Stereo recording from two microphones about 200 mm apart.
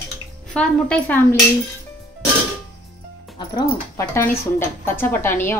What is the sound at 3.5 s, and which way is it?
A woman's voice, 15° left (ahead or behind).